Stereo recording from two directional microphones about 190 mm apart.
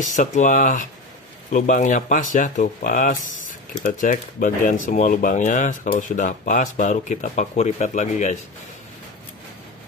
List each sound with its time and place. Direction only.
0.0 s speech: 40° left (ahead or behind)